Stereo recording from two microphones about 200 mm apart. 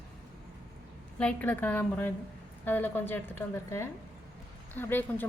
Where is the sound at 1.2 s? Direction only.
5° left (ahead or behind).